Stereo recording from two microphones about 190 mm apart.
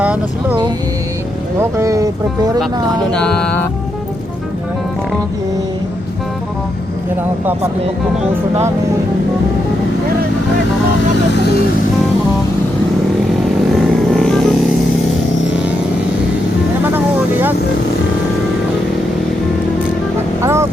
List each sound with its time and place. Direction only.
0.0 s speech: 5° right (ahead or behind)
1.8 s speech: 15° right (ahead or behind)
3.1 s music: 5° left (ahead or behind)
13.7 s vehicle: centre (ahead or behind)
20.4 s speech: 15° right (ahead or behind)